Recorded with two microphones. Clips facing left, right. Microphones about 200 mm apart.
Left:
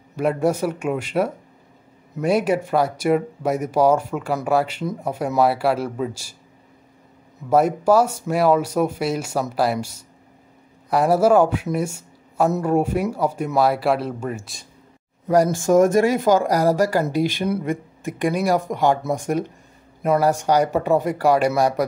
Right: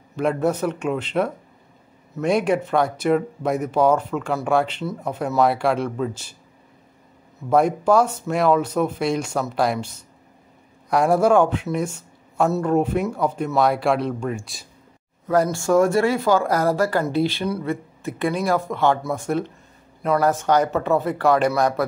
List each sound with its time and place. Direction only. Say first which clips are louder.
0.1 s speech: left 1 dB; 10° left (ahead or behind)
7.4 s speech: left 1 dB; 5° left (ahead or behind)
15.2 s speech: left 2 dB; 15° left (ahead or behind)